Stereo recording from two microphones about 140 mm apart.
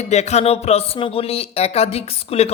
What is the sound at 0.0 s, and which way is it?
Speech, 55° left (ahead or behind).